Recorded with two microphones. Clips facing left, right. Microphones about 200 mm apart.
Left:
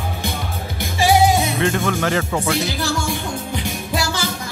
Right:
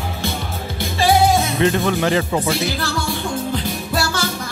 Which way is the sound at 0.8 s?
15° left (ahead or behind).